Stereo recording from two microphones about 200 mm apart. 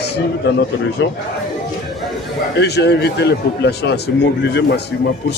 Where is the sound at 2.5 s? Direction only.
55° left (ahead or behind).